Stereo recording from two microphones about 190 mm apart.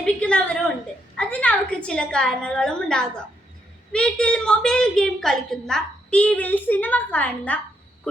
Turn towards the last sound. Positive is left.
turn(degrees=10)  # may be behind; listen again after turning